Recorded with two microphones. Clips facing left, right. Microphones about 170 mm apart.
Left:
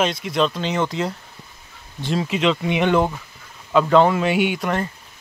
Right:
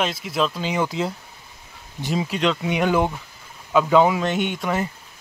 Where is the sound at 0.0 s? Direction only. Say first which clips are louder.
Left 3 dB; centre (ahead or behind).